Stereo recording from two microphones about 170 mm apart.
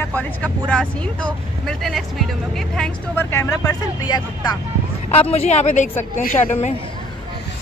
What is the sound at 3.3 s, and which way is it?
Speech, 15° left (ahead or behind).